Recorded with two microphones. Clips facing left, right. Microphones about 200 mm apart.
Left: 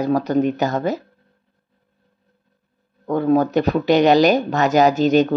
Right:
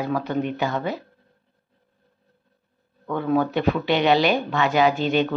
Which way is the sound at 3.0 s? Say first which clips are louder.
Left 5 dB; 40° left (ahead or behind).